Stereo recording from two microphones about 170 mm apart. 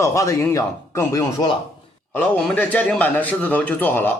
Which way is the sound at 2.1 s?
10° left (ahead or behind).